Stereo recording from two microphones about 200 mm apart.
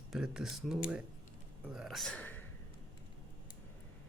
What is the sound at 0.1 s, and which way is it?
Speech, centre (ahead or behind).